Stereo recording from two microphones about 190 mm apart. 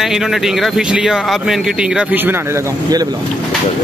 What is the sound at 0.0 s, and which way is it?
Speech, centre (ahead or behind).